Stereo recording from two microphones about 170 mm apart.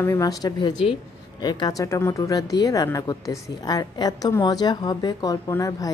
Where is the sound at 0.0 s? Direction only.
20° left (ahead or behind).